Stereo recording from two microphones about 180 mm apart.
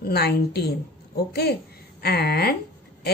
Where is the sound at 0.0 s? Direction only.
65° left (ahead or behind).